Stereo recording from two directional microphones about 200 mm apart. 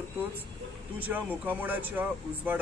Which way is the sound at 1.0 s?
10° right (ahead or behind).